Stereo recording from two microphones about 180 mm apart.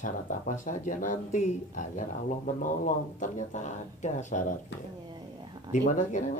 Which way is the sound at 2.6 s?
45° left (ahead or behind).